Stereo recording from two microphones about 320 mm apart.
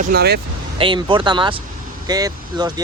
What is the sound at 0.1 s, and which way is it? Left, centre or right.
Speech, right.